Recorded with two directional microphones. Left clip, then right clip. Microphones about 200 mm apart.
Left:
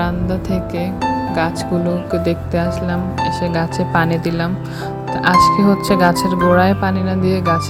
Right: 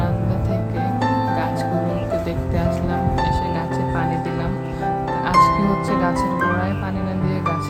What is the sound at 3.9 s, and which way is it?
Speech, 40° left (ahead or behind).